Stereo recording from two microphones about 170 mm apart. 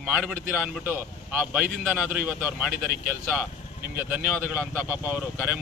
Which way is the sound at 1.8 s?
5° right (ahead or behind).